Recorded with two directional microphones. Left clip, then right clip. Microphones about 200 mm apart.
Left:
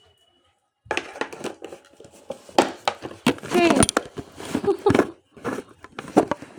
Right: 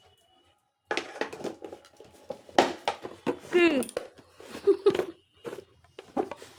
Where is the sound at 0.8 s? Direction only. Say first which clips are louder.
Left 4 dB; 35° left (ahead or behind).